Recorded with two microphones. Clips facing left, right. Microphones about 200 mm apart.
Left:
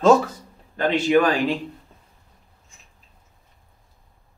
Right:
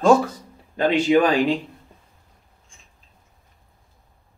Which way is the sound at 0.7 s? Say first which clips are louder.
Right 1 dB; 15° right (ahead or behind).